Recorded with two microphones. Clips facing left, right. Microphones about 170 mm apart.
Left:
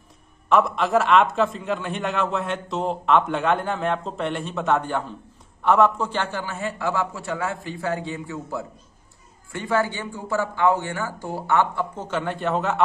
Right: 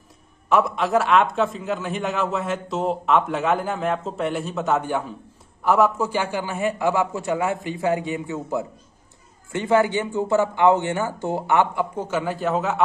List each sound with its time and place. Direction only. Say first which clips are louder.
0.5 s a man's voice: even; centre (ahead or behind)